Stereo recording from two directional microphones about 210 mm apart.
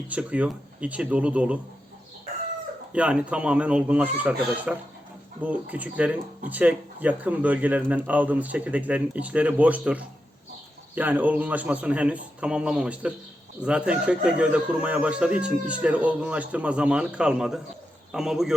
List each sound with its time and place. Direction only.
0.1 s speech: 5° right (ahead or behind)
2.9 s speech: 5° right (ahead or behind)